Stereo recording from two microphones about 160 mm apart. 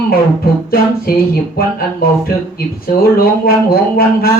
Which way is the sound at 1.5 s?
70° left (ahead or behind).